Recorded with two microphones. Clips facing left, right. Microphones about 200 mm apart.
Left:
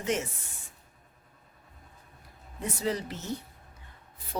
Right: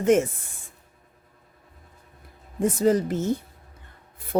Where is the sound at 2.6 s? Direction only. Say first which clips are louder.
Right 11 dB; 45° right (ahead or behind).